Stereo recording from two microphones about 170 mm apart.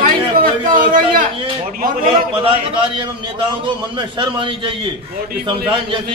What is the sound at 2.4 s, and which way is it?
A man's voice, 30° right (ahead or behind).